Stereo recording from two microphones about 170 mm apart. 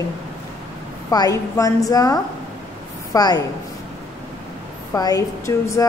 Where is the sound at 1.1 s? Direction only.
20° left (ahead or behind).